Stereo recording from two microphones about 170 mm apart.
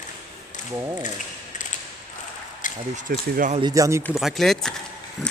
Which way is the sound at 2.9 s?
45° right (ahead or behind).